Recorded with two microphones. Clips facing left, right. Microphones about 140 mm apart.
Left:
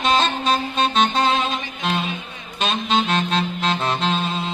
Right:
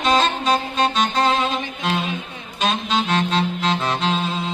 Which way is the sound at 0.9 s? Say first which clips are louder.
Left 2 dB; 25° left (ahead or behind).